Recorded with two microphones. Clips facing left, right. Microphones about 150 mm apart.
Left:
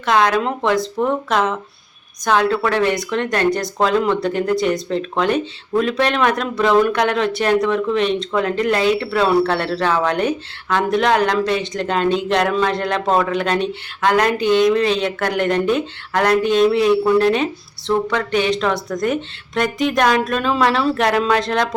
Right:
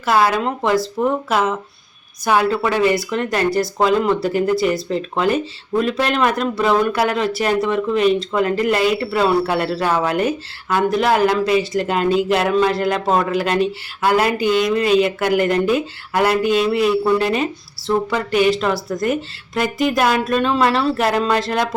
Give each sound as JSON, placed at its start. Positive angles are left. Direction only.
{"t": 0.0, "sound": "speech", "side_deg": -5}